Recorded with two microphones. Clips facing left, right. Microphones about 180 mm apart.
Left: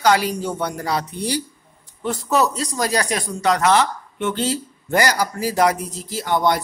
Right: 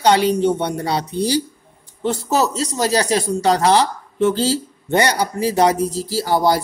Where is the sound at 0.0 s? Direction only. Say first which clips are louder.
Right 4 dB; 25° right (ahead or behind).